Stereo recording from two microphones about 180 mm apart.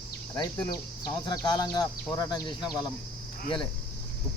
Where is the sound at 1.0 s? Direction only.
25° left (ahead or behind).